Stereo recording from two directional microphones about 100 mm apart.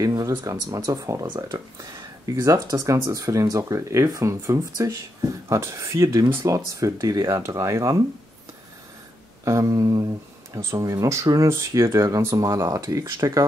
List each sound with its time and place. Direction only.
0.0 s a sound: 35° right (ahead or behind)
0.5 s speech: 40° right (ahead or behind)
1.2 s speech: 55° right (ahead or behind)
1.8 s a sound: 35° right (ahead or behind)
2.4 s speech: 35° right (ahead or behind)
9.4 s speech: 35° right (ahead or behind)